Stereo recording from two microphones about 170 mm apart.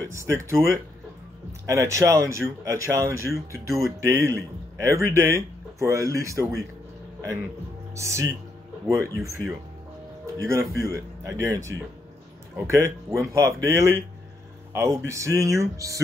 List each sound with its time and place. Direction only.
0.1 s speech: 15° right (ahead or behind)
7.9 s speech: 15° right (ahead or behind)
15.0 s speech: 15° right (ahead or behind)